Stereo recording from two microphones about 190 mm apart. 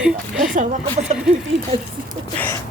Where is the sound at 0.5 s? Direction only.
35° right (ahead or behind).